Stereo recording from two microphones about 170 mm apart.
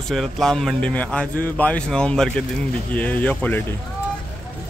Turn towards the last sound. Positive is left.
turn(degrees=10)  # may be behind; listen again after turning